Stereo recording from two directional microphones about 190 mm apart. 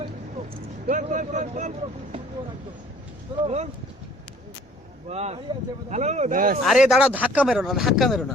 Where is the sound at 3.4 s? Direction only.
35° right (ahead or behind).